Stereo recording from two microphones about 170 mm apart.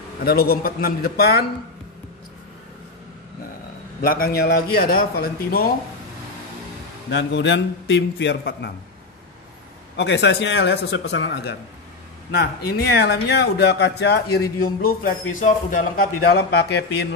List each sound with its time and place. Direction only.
0.2 s a man's voice: 65° left (ahead or behind)
4.0 s a man's voice: 55° left (ahead or behind)
7.1 s a man's voice: 90° left
9.9 s a man's voice: 90° left
12.3 s a man's voice: 65° left (ahead or behind)
14.6 s a man's voice: 60° left (ahead or behind); by 17.1 s 80° left